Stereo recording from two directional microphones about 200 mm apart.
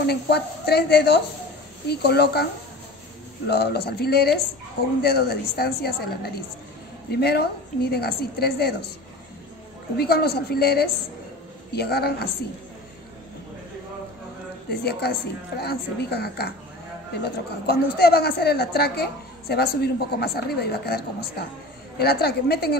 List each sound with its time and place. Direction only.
0.0 s a woman's voice: 55° left (ahead or behind)
3.4 s a woman's voice: 55° left (ahead or behind)
9.9 s a woman's voice: 55° left (ahead or behind)
14.7 s a woman's voice: 55° left (ahead or behind)